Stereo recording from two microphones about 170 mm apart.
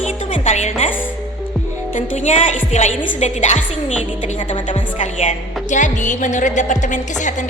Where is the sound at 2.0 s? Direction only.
45° left (ahead or behind).